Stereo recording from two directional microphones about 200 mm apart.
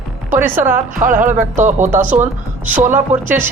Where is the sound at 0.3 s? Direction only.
10° right (ahead or behind).